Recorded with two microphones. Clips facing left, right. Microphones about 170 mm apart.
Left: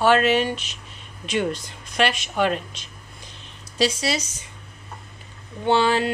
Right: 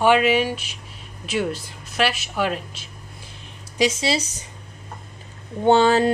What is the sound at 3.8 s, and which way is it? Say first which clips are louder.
Speech: right 2 dB; 20° right (ahead or behind).